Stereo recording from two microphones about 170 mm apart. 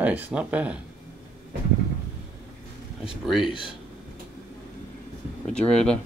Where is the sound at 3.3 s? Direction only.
5° right (ahead or behind).